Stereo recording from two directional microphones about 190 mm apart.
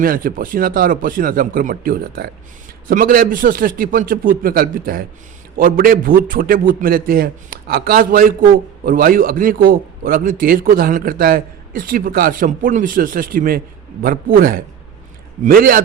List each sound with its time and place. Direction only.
0.0 s a man's voice: 50° right (ahead or behind)